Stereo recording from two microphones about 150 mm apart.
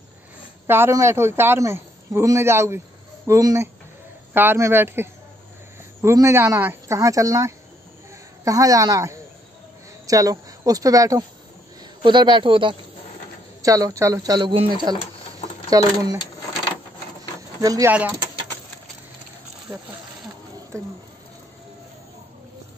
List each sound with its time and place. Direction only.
0.7 s a man's voice: 15° right (ahead or behind); by 12.7 s 35° right (ahead or behind)
13.6 s a man's voice: 25° right (ahead or behind)
17.6 s speech: 20° right (ahead or behind)
20.7 s speech: 20° right (ahead or behind)